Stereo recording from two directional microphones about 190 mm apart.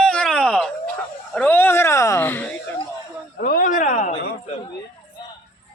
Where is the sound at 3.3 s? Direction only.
50° left (ahead or behind).